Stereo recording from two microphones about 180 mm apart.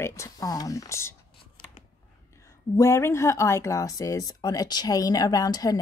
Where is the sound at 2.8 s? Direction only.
15° left (ahead or behind).